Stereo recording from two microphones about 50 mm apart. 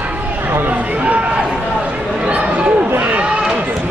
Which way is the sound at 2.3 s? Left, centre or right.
Right.